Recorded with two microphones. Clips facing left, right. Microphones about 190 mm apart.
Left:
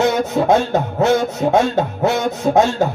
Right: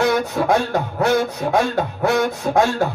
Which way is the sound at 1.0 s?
25° left (ahead or behind).